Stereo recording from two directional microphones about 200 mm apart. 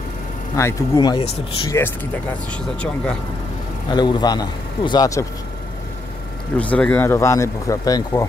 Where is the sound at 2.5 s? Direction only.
5° left (ahead or behind).